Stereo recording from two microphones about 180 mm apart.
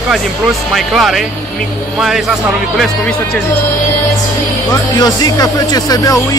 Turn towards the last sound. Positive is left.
turn(degrees=20)  # may be behind; listen again after turning